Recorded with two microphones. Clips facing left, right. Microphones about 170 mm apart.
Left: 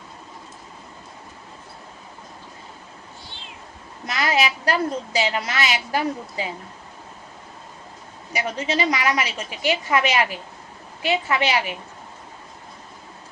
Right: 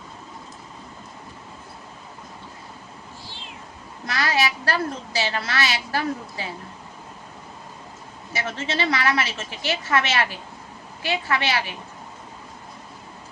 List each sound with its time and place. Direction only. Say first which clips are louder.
4.0 s a woman's voice: left 2 dB; 20° left (ahead or behind)
8.3 s a woman's voice: left 3 dB; 15° left (ahead or behind)